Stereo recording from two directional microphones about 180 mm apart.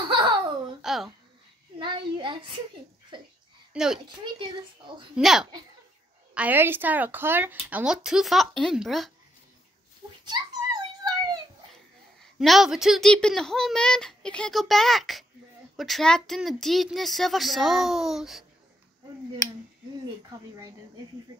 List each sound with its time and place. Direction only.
0.0 s baby laughter: 25° right (ahead or behind)
0.8 s babbling: centre (ahead or behind)
1.8 s a sound: 25° right (ahead or behind)
3.7 s a child's voice: 5° right (ahead or behind)
4.0 s speech: 25° right (ahead or behind)
5.1 s a child's voice: 5° right (ahead or behind)
10.2 s a sound: 25° right (ahead or behind)
12.2 s a child's voice: centre (ahead or behind)
20.2 s speech: 20° right (ahead or behind)